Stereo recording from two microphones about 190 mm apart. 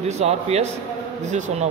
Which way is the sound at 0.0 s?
35° right (ahead or behind).